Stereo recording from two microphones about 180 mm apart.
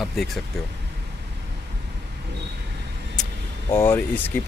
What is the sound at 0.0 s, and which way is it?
Speech, centre (ahead or behind).